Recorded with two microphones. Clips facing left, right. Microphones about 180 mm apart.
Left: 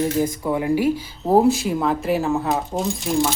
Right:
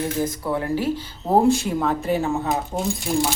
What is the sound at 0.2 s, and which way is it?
Speech, 15° left (ahead or behind).